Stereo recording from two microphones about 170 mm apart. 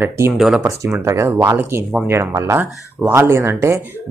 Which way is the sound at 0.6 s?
15° right (ahead or behind).